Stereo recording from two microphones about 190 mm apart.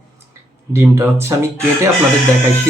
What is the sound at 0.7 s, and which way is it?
Speech, 10° right (ahead or behind).